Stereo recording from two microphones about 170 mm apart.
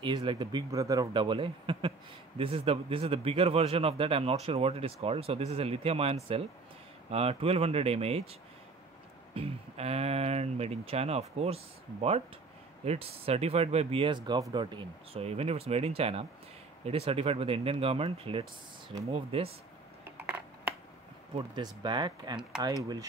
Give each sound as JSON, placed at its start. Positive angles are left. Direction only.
{"t": 0.0, "sound": "speech", "side_deg": -30}
{"t": 20.2, "sound": "a sound", "side_deg": -10}
{"t": 21.4, "sound": "speech", "side_deg": -25}